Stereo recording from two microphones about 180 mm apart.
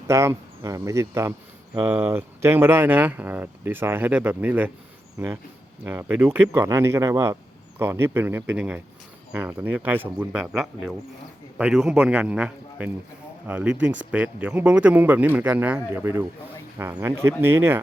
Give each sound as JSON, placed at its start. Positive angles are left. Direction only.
{"t": 0.1, "sound": "speech", "side_deg": -15}
{"t": 5.8, "sound": "speech", "side_deg": -10}